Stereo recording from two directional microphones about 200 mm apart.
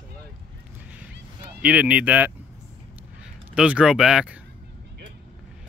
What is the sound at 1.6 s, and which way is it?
Speech, 5° right (ahead or behind).